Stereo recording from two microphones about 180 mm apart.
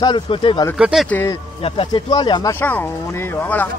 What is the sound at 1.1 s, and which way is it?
Speech, 10° left (ahead or behind).